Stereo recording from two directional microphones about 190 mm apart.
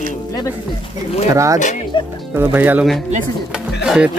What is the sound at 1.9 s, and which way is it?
Music, 25° left (ahead or behind).